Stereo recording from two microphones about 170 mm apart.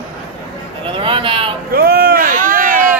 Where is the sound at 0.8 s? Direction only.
30° right (ahead or behind).